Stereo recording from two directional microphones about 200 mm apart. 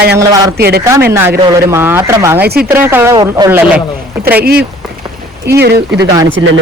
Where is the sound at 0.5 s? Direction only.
55° right (ahead or behind).